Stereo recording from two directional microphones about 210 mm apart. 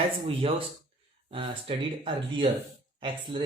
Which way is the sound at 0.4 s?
25° right (ahead or behind).